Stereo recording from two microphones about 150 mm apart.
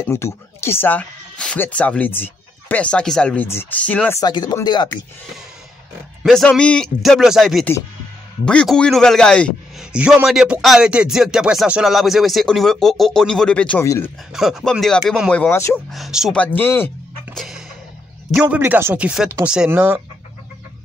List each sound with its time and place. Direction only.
0.1 s speech: 15° left (ahead or behind)
4.2 s speech: 30° left (ahead or behind)
6.2 s speech: 5° left (ahead or behind)
9.9 s speech: 5° right (ahead or behind); by 14.1 s 15° left (ahead or behind)
14.3 s speech: centre (ahead or behind)
15.5 s speech: 20° left (ahead or behind)
15.9 s speech: centre (ahead or behind)
16.3 s speech: 15° left (ahead or behind)
17.4 s a sound: 5° right (ahead or behind)
18.3 s speech: 5° right (ahead or behind)